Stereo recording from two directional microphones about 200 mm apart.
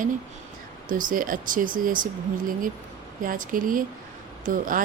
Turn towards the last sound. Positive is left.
turn(degrees=-45)  # may be behind; listen again after turning